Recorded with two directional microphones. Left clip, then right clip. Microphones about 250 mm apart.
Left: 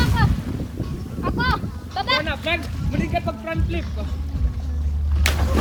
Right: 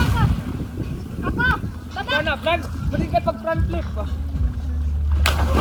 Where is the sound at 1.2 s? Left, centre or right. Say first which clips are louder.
Right 2 dB; left.